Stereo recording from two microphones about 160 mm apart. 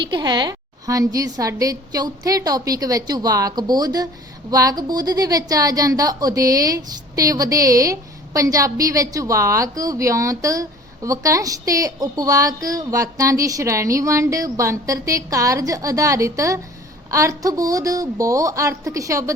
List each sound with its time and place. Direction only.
0.1 s a woman's voice: 25° right (ahead or behind)